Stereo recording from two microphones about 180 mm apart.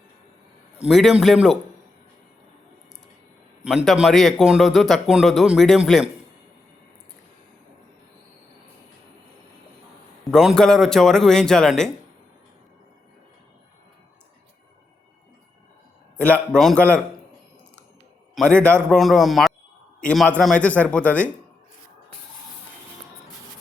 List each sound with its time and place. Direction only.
0.8 s a man's voice: centre (ahead or behind)
3.6 s a man's voice: 5° right (ahead or behind)
10.3 s a man's voice: 5° left (ahead or behind)
16.5 s a man's voice: 5° left (ahead or behind)
18.3 s a man's voice: 5° left (ahead or behind)